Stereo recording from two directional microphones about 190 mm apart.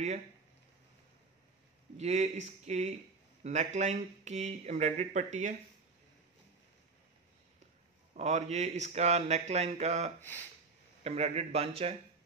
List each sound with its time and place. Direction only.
2.0 s speech: 35° right (ahead or behind)
8.1 s speech: 35° right (ahead or behind)